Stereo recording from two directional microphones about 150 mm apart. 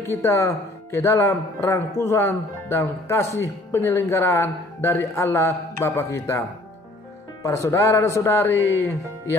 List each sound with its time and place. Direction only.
0.1 s speech: 20° left (ahead or behind)
7.4 s speech: 20° left (ahead or behind)